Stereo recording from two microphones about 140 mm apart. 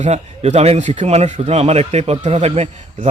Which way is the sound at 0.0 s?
50° right (ahead or behind).